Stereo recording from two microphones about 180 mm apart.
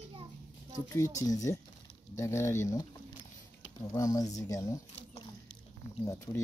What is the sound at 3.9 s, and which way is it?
Speech, 20° left (ahead or behind).